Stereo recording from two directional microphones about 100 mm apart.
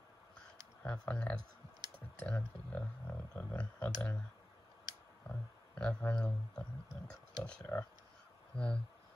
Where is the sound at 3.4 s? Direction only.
15° left (ahead or behind).